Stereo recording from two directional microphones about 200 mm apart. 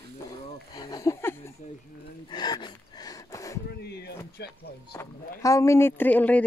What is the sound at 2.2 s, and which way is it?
Gasp, 20° left (ahead or behind).